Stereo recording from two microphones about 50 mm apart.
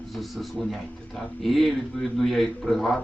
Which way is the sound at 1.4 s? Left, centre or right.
Centre.